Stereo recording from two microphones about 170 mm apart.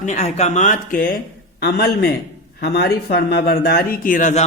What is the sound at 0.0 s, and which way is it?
Speech, 40° left (ahead or behind).